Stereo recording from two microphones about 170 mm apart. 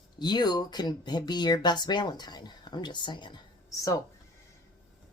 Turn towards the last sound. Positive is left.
turn(degrees=20)  # may be behind; listen again after turning